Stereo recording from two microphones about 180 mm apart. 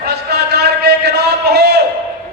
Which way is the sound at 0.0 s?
65° right (ahead or behind).